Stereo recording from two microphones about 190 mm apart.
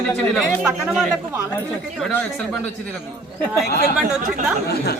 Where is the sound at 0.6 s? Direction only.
10° right (ahead or behind).